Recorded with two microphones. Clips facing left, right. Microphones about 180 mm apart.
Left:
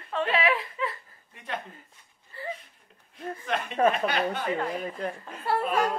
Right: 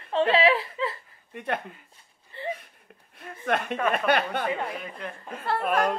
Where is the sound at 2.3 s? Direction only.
25° right (ahead or behind).